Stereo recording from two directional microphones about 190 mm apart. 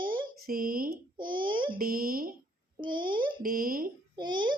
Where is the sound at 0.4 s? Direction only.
50° right (ahead or behind).